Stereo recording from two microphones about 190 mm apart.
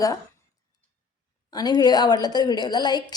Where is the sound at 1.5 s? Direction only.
20° left (ahead or behind).